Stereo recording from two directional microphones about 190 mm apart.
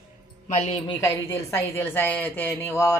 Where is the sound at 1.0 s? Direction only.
15° left (ahead or behind).